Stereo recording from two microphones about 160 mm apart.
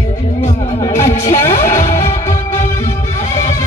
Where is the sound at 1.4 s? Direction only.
15° left (ahead or behind).